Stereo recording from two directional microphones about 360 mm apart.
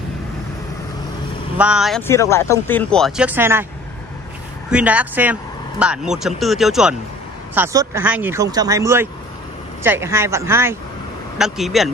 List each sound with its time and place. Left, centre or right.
1.6 s speech: centre
4.6 s speech: centre